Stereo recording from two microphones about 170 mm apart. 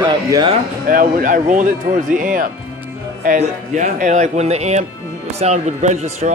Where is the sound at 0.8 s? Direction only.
55° right (ahead or behind).